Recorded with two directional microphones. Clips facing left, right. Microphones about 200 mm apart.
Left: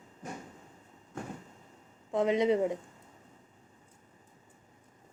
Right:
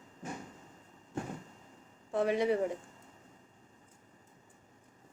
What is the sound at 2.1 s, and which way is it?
Speech, 20° left (ahead or behind).